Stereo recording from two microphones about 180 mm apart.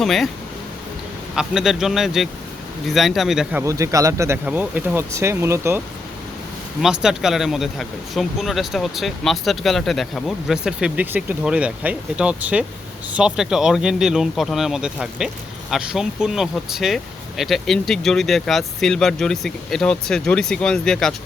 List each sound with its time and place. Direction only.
0.0 s speech: centre (ahead or behind)
1.4 s speech: centre (ahead or behind)
3.6 s speech: 15° right (ahead or behind)
6.8 s speech: 5° right (ahead or behind)